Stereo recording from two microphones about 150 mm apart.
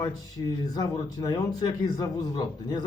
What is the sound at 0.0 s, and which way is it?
A man's voice, 25° left (ahead or behind).